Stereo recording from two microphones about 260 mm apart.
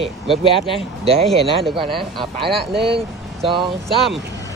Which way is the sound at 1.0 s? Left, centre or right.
Right.